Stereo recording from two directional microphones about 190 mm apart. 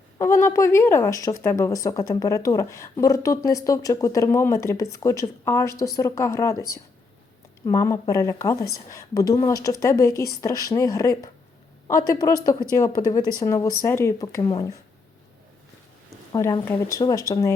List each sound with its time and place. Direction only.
0.2 s a woman's voice: 15° left (ahead or behind)
16.0 s speech: 15° left (ahead or behind)